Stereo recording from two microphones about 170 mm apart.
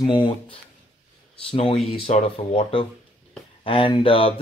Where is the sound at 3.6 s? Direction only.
30° left (ahead or behind).